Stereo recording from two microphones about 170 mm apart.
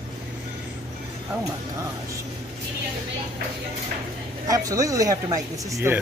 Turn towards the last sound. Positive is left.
turn(degrees=-15)  # may be behind; listen again after turning